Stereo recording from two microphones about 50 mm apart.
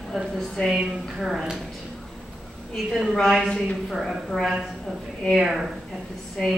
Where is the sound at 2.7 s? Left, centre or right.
Centre.